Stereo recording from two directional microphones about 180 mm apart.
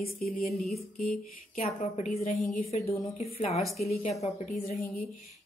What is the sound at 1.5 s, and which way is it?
A woman's voice, 40° left (ahead or behind).